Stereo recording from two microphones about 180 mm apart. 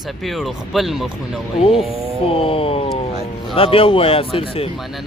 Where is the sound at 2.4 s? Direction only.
30° left (ahead or behind).